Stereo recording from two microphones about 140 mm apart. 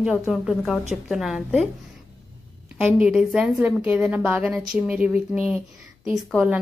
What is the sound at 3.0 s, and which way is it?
A woman's voice, 5° right (ahead or behind).